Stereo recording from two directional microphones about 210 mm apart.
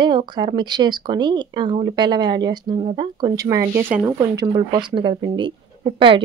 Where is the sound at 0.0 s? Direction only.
20° right (ahead or behind).